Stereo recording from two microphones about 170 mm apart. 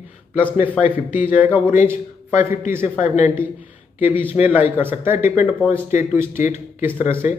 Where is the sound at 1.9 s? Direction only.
15° right (ahead or behind).